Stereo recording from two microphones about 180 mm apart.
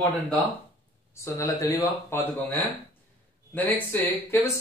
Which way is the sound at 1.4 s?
15° left (ahead or behind).